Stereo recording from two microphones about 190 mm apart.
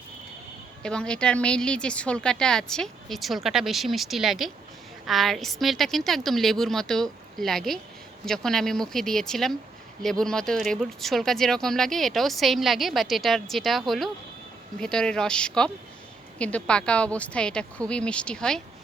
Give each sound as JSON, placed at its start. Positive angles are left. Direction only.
{"t": 0.8, "sound": "speech", "side_deg": 5}